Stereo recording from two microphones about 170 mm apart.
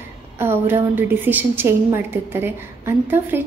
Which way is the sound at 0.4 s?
15° right (ahead or behind).